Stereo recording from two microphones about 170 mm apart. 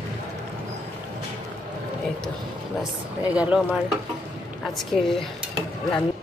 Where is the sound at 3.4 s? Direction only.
5° right (ahead or behind).